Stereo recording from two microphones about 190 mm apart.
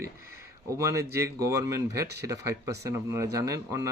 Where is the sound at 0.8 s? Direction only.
15° right (ahead or behind).